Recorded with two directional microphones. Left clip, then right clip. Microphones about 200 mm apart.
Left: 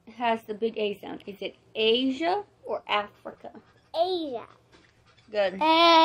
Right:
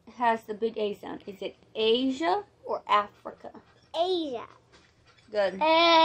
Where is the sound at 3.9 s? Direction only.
15° right (ahead or behind).